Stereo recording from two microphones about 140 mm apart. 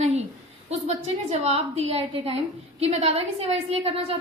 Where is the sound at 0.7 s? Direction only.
50° right (ahead or behind).